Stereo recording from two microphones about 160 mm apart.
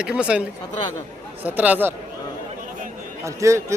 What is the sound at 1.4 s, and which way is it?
Speech, 10° right (ahead or behind).